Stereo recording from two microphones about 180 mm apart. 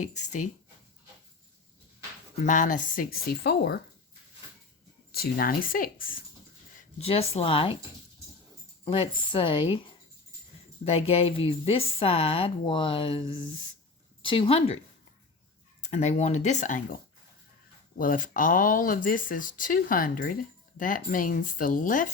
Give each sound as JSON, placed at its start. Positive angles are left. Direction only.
{"t": 0.0, "sound": "a woman's voice", "side_deg": 40}
{"t": 2.3, "sound": "speech", "side_deg": 45}
{"t": 5.1, "sound": "speech", "side_deg": 55}
{"t": 6.7, "sound": "speech", "side_deg": 35}
{"t": 8.8, "sound": "speech", "side_deg": 30}
{"t": 10.8, "sound": "a woman's voice", "side_deg": 35}
{"t": 15.8, "sound": "a woman's voice", "side_deg": 40}